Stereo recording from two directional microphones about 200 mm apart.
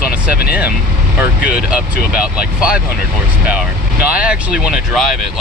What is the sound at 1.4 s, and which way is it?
Speech, 45° left (ahead or behind).